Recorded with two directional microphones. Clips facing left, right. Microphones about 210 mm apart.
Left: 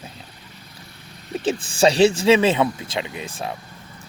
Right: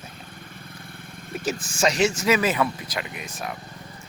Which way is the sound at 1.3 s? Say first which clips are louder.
Left 5 dB; 30° left (ahead or behind).